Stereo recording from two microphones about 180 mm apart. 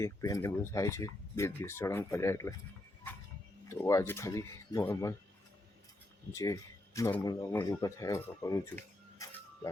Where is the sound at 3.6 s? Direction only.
15° left (ahead or behind).